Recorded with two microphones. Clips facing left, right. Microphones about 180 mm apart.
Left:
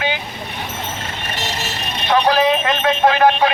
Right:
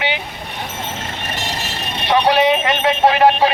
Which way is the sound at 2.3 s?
20° right (ahead or behind).